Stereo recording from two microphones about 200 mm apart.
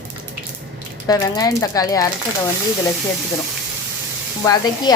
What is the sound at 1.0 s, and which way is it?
Speech, 20° left (ahead or behind).